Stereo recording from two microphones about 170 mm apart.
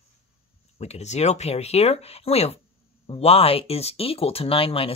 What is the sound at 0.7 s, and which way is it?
Speech, 40° left (ahead or behind).